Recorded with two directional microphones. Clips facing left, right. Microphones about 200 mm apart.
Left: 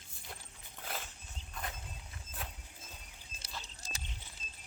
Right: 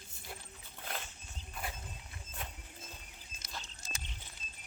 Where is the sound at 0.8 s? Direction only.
Centre (ahead or behind).